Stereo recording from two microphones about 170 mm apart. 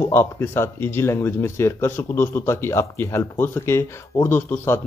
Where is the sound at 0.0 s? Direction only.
15° left (ahead or behind).